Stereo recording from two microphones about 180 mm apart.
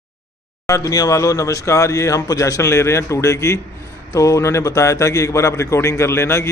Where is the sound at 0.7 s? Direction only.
20° left (ahead or behind).